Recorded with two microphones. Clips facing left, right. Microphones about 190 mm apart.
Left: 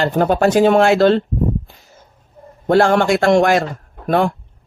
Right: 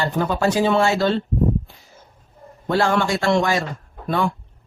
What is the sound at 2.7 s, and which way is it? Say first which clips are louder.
A man's voice: left 6 dB; 50° left (ahead or behind).